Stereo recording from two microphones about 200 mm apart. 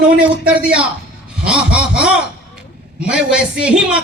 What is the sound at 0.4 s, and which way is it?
A man's voice, 5° right (ahead or behind).